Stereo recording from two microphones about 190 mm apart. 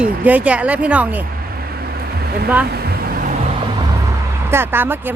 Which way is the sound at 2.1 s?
55° right (ahead or behind).